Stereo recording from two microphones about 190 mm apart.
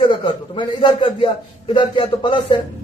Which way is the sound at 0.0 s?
25° left (ahead or behind).